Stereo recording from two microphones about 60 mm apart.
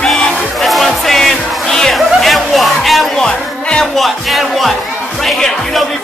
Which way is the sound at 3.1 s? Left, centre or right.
Centre.